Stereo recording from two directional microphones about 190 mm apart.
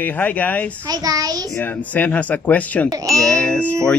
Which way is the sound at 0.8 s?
20° right (ahead or behind).